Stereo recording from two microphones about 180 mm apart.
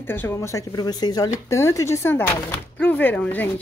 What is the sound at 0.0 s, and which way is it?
Speech, 10° left (ahead or behind).